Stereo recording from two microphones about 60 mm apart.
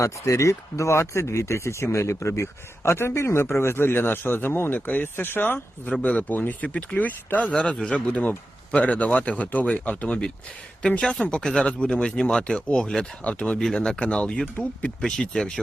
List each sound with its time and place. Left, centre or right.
0.0 s speech: left
7.5 s speech: centre